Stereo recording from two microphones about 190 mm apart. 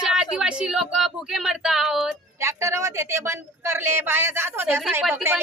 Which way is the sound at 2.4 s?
15° right (ahead or behind).